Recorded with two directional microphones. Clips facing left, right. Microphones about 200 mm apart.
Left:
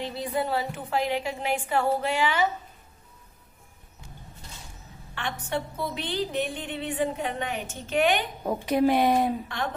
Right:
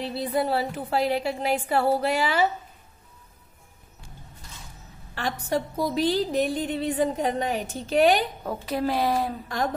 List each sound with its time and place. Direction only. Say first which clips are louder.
0.0 s a woman's voice: right 3 dB; 35° right (ahead or behind)
5.1 s a woman's voice: right 4 dB; 35° right (ahead or behind)
8.5 s speech: left 7 dB; 20° left (ahead or behind)